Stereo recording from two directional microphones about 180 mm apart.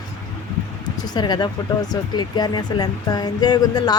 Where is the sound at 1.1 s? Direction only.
25° left (ahead or behind).